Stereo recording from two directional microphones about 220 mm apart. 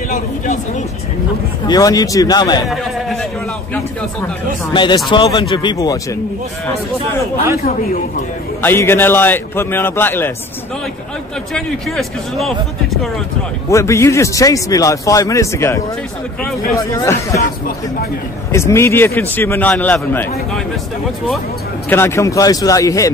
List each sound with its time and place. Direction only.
1.7 s a man's voice: 15° left (ahead or behind)
2.7 s speech: centre (ahead or behind)
4.7 s speech: 20° left (ahead or behind)
8.6 s a man's voice: 10° left (ahead or behind)
11.5 s speech: centre (ahead or behind)
13.7 s a man's voice: 15° left (ahead or behind)
18.5 s a man's voice: 10° left (ahead or behind)
21.8 s a man's voice: 10° left (ahead or behind)